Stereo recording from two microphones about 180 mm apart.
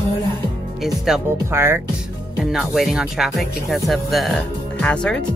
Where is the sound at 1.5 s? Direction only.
15° right (ahead or behind).